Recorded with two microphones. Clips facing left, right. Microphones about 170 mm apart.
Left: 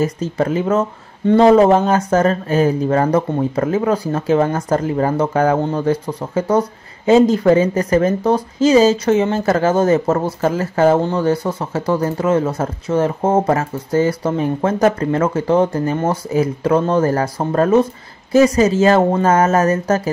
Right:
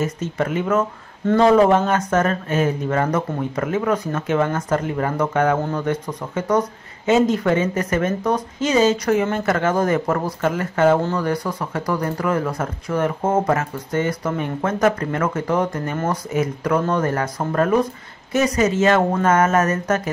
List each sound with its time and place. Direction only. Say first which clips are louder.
0.0 s speech: left 5 dB; 35° left (ahead or behind)